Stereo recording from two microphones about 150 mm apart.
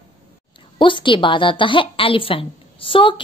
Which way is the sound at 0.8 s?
35° left (ahead or behind).